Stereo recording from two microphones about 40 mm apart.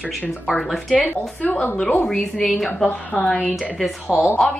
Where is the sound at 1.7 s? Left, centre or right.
Left.